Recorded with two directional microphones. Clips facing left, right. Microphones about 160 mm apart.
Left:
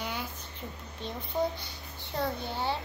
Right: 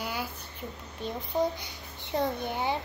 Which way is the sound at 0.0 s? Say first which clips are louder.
Right 2 dB; 5° right (ahead or behind).